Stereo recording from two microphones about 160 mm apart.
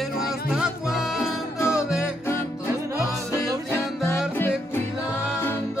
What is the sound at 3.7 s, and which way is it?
Music, 15° left (ahead or behind).